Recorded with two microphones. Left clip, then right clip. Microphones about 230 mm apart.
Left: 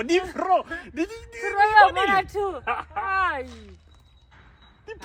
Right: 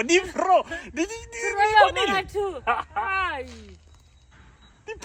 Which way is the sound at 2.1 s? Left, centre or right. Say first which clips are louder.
Left 3 dB; centre.